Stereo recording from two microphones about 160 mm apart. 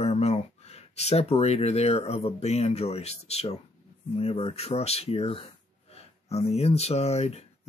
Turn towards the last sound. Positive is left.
turn(degrees=40)  # may be behind; listen again after turning